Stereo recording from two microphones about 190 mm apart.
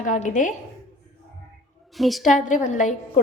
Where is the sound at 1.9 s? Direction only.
Centre (ahead or behind).